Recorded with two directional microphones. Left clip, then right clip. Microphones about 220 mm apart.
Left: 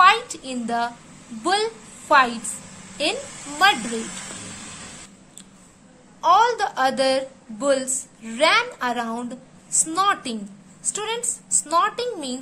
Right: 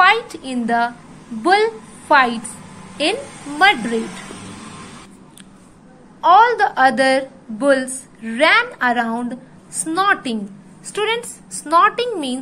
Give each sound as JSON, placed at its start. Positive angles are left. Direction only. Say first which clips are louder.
{"t": 0.0, "sound": "a sound", "louder": "right 2 dB", "side_deg": 0}
{"t": 1.4, "sound": "a woman's voice", "louder": "right 7 dB", "side_deg": 0}
{"t": 6.2, "sound": "a woman's voice", "louder": "right 6 dB", "side_deg": 0}
{"t": 11.6, "sound": "a woman's voice", "louder": "right 7 dB", "side_deg": -5}